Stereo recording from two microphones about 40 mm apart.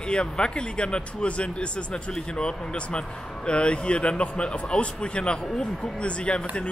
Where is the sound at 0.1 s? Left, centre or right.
Left.